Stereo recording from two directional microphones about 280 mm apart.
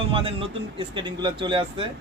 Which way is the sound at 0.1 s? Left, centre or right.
Centre.